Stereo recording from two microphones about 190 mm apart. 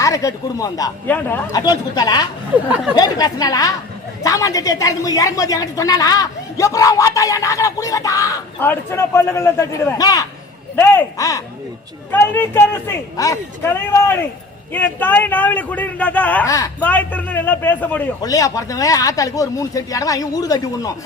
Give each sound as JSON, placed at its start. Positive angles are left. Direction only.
{"t": 0.0, "sound": "a woman's voice", "side_deg": 15}
{"t": 1.5, "sound": "a woman's voice", "side_deg": 20}
{"t": 2.6, "sound": "speech", "side_deg": -10}
{"t": 2.9, "sound": "a woman's voice", "side_deg": 20}